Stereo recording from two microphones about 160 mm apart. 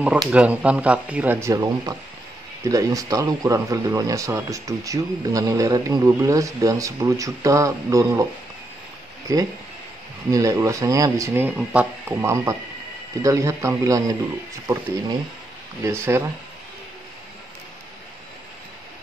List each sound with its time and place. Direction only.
0.3 s speech: 10° right (ahead or behind)
9.3 s speech: 20° right (ahead or behind)